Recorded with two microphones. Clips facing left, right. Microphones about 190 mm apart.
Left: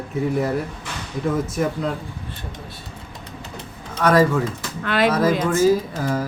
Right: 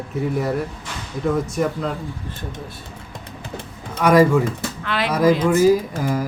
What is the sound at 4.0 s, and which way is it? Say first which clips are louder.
Speech: right 3 dB; 10° right (ahead or behind).